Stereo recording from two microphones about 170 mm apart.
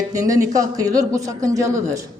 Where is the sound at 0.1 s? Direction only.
20° right (ahead or behind).